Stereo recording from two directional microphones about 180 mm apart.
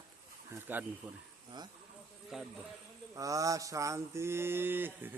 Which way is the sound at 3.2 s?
20° right (ahead or behind).